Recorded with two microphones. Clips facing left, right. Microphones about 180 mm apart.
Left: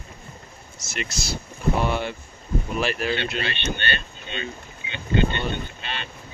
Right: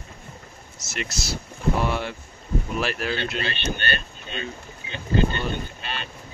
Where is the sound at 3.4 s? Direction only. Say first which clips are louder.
Even; 40° right (ahead or behind).